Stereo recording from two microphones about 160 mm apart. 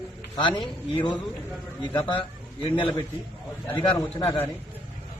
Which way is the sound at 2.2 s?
30° left (ahead or behind).